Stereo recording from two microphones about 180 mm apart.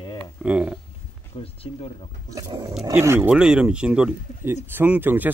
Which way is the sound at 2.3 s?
20° right (ahead or behind).